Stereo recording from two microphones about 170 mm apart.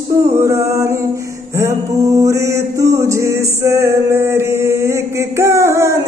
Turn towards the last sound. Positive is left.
turn(degrees=-15)  # may be behind; listen again after turning